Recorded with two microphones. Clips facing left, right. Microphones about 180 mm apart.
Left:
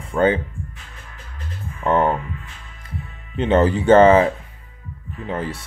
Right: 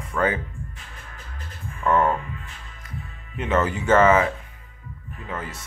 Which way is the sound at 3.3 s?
30° left (ahead or behind).